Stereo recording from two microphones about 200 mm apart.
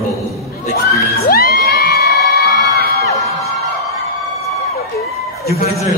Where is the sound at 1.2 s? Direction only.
50° left (ahead or behind).